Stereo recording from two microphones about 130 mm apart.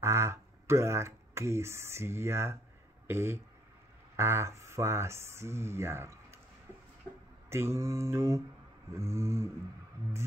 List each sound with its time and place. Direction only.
0.0 s speech: 20° right (ahead or behind)
7.4 s speech: 20° right (ahead or behind)